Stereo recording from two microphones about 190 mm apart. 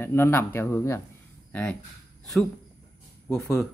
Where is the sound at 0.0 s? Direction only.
10° left (ahead or behind).